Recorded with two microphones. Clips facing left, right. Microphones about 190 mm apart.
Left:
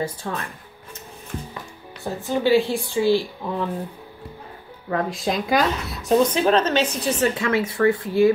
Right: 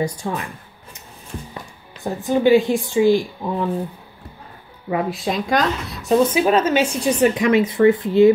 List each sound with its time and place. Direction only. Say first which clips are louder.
0.0 s speech: right 4 dB; 10° right (ahead or behind)
2.2 s speech: right 4 dB; 15° right (ahead or behind)
4.8 s speech: right 2 dB; 5° right (ahead or behind)